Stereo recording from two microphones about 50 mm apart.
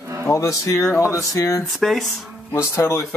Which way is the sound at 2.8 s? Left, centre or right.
Left.